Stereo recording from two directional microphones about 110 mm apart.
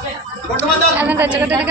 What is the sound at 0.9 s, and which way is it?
Speech, 15° right (ahead or behind).